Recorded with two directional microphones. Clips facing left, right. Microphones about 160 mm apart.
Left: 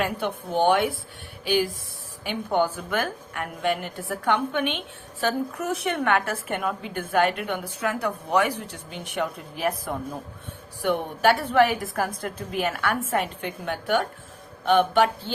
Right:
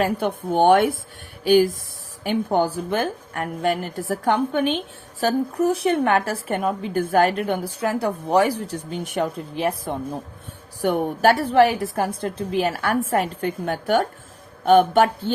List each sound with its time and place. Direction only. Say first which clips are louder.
0.0 s a woman's voice: right 5 dB; 40° right (ahead or behind)
9.6 s speech: right 3 dB; 25° right (ahead or behind)
10.8 s a woman's voice: right 4 dB; 40° right (ahead or behind)